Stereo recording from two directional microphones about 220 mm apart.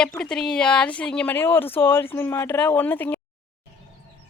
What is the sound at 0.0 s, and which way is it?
Speech, 5° left (ahead or behind).